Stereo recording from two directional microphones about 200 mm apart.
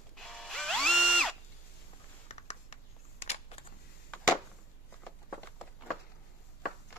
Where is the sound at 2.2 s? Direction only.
35° left (ahead or behind).